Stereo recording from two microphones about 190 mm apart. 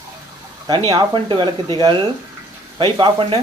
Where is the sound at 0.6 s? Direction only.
20° right (ahead or behind).